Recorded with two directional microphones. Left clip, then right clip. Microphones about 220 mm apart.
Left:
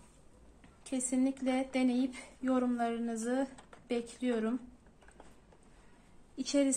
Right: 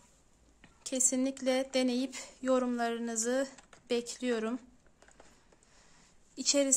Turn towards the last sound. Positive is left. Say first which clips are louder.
# right 2 dB
turn(degrees=-30)  # may be behind; listen again after turning